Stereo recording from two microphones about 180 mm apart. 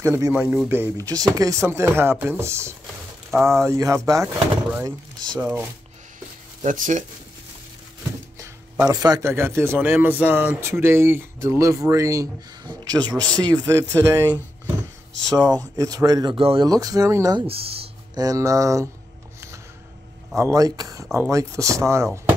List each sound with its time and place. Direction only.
0.0 s speech: 15° right (ahead or behind)
6.1 s a sound: 45° right (ahead or behind)
8.4 s speech: 20° right (ahead or behind)
15.3 s speech: 20° right (ahead or behind)
17.5 s a sound: 30° right (ahead or behind)
18.2 s speech: 20° right (ahead or behind)
20.3 s speech: 20° right (ahead or behind)